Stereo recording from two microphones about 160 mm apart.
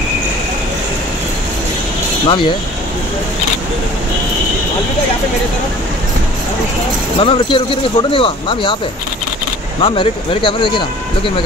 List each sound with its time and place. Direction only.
2.2 s speech: 30° left (ahead or behind)
7.2 s speech: 30° left (ahead or behind)
9.8 s speech: 35° left (ahead or behind)